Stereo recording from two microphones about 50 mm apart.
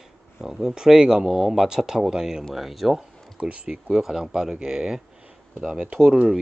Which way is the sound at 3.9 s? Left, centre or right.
Centre.